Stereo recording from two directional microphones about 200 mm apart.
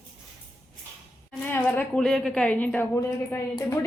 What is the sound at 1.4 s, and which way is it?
A woman's voice, 10° left (ahead or behind).